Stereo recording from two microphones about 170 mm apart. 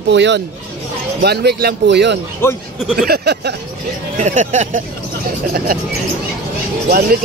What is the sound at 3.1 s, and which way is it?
Speech, 75° right (ahead or behind).